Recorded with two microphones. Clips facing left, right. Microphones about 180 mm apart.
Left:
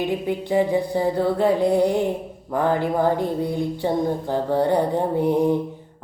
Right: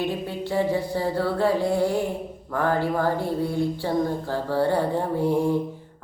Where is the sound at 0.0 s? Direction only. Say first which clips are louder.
Left 4 dB; 15° left (ahead or behind).